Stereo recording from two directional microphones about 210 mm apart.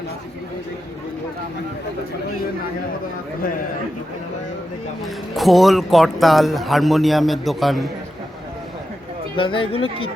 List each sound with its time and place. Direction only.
5.3 s a man's voice: centre (ahead or behind)
9.3 s speech: 25° left (ahead or behind)